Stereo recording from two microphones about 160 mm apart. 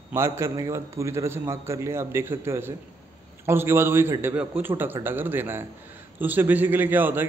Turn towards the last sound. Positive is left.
turn(degrees=-10)  # may be behind; listen again after turning